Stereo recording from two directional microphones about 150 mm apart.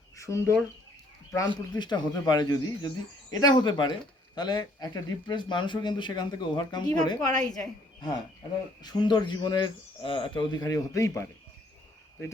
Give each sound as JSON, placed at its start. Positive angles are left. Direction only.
{"t": 0.2, "sound": "speech", "side_deg": 20}
{"t": 1.8, "sound": "speech", "side_deg": 30}
{"t": 8.8, "sound": "speech", "side_deg": 30}